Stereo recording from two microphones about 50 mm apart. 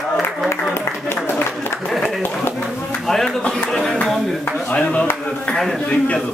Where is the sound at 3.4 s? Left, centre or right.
Centre.